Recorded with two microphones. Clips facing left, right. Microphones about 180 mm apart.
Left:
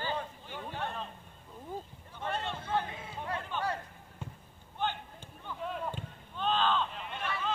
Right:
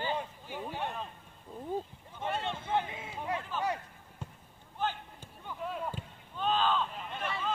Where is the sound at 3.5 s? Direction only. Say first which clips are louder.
Even; 5° right (ahead or behind).